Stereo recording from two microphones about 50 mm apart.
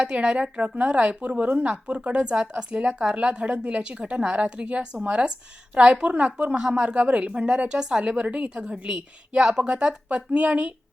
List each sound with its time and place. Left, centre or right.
0.0 s speech: centre